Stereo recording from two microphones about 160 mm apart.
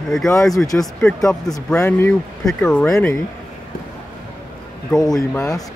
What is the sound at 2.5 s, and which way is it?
Speech, 5° left (ahead or behind).